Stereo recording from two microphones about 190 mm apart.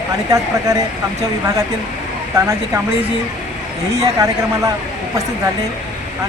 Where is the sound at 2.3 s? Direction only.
15° right (ahead or behind).